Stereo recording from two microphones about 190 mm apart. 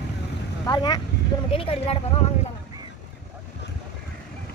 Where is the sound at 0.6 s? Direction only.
20° left (ahead or behind).